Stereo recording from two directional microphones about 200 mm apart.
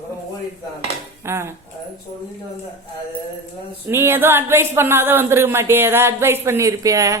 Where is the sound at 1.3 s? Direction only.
15° right (ahead or behind).